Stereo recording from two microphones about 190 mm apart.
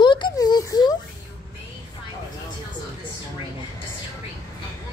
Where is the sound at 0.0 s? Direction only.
25° left (ahead or behind).